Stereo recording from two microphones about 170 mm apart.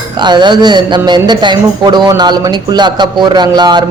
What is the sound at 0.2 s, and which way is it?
Speech, 25° right (ahead or behind).